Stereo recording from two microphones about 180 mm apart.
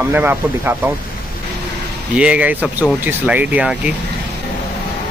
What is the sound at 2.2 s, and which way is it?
Speech, 5° right (ahead or behind).